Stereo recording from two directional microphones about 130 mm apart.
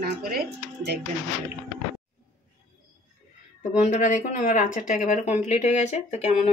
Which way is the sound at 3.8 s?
70° left (ahead or behind).